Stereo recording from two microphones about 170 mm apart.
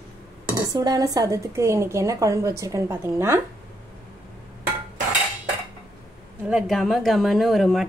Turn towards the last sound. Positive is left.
turn(degrees=0)  # may be behind; listen again after turning